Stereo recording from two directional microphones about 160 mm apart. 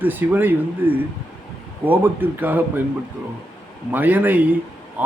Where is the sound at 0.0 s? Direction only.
10° right (ahead or behind).